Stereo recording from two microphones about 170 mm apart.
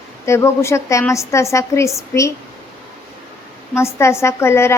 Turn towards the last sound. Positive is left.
turn(degrees=15)  # may be behind; listen again after turning